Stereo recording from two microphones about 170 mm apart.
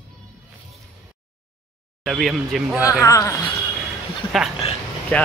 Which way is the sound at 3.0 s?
20° left (ahead or behind).